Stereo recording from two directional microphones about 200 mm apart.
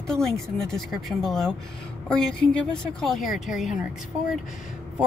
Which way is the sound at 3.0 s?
Centre (ahead or behind).